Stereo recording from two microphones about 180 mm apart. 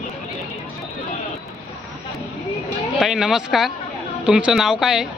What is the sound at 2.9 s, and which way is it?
Speech, centre (ahead or behind).